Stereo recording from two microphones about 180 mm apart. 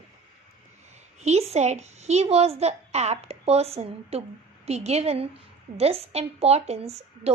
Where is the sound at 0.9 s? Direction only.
40° right (ahead or behind).